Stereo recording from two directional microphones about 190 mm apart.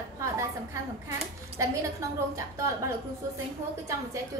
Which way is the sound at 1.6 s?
15° right (ahead or behind).